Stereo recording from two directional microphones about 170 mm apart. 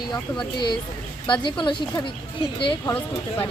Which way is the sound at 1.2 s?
30° left (ahead or behind).